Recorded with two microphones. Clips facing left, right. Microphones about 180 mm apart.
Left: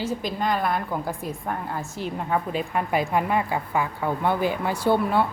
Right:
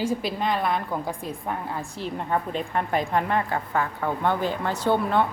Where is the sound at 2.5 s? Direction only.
5° left (ahead or behind).